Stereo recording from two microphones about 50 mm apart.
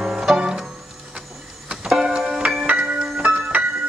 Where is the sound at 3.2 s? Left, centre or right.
Right.